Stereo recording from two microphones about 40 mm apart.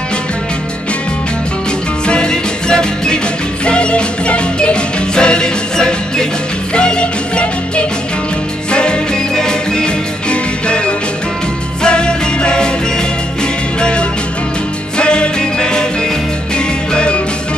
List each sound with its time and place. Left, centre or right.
2.0 s music: left